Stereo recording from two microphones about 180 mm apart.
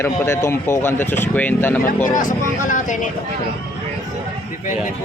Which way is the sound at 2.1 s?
45° left (ahead or behind).